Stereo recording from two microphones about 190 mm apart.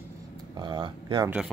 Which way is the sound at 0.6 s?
25° right (ahead or behind).